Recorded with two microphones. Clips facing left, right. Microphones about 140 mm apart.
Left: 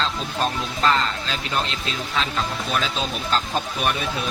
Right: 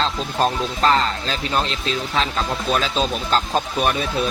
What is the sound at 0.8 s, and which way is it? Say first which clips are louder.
Speech: right 3 dB; 40° right (ahead or behind).